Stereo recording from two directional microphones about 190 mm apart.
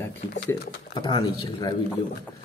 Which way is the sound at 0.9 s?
25° left (ahead or behind).